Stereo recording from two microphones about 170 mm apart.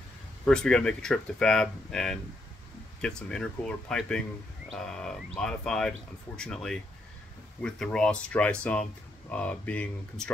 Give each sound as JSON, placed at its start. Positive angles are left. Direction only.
{"t": 0.5, "sound": "speech", "side_deg": 5}